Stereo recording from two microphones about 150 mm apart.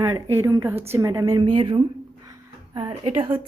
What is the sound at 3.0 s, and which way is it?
Speech, 35° right (ahead or behind).